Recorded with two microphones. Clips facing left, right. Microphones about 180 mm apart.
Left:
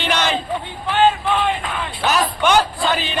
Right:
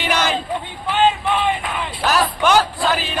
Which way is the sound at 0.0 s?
5° right (ahead or behind).